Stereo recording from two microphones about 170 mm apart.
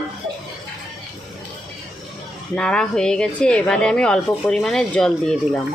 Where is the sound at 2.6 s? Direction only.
5° left (ahead or behind).